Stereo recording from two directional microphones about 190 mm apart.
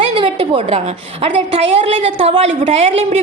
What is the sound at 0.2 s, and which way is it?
A woman's voice, 30° right (ahead or behind).